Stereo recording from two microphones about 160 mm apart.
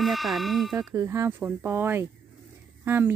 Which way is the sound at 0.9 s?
20° right (ahead or behind).